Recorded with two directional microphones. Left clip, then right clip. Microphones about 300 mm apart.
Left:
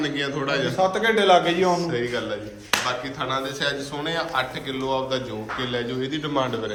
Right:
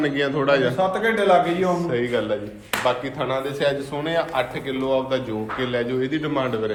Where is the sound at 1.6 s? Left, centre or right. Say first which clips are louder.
Right 1 dB; centre.